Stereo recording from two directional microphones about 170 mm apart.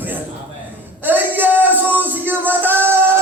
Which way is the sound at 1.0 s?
10° right (ahead or behind).